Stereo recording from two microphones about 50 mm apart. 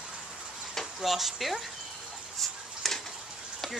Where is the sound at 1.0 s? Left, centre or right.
Centre.